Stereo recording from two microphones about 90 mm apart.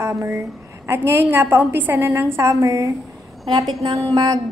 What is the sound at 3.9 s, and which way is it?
Speech, 40° right (ahead or behind).